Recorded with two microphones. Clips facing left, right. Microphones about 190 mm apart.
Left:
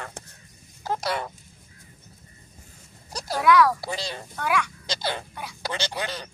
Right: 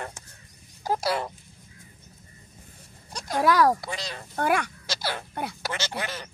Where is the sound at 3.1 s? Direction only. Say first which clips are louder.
Even; 35° left (ahead or behind).